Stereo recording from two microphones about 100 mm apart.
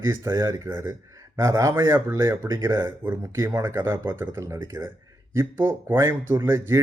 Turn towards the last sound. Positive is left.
turn(degrees=-25)  # may be behind; listen again after turning